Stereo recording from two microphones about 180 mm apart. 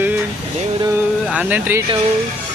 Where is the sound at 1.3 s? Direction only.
10° right (ahead or behind).